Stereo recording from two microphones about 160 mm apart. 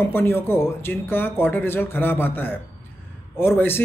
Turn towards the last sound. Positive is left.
turn(degrees=15)  # may be behind; listen again after turning